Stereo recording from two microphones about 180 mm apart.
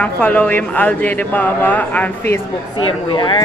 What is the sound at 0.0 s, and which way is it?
A man's voice, 5° left (ahead or behind).